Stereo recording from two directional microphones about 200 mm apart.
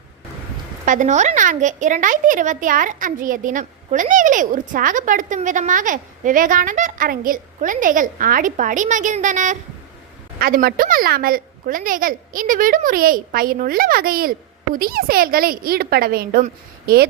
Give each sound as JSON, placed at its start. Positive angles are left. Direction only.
{"t": 0.9, "sound": "a woman's voice", "side_deg": -40}